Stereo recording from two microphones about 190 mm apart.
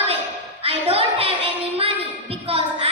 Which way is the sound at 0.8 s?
30° right (ahead or behind).